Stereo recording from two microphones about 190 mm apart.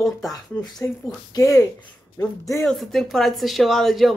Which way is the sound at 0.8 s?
15° left (ahead or behind).